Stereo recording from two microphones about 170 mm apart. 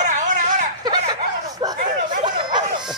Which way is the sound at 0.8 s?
25° right (ahead or behind).